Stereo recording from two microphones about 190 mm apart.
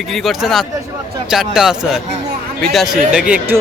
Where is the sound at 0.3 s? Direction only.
Centre (ahead or behind).